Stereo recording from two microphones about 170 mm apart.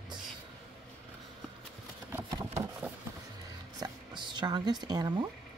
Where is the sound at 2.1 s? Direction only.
15° right (ahead or behind).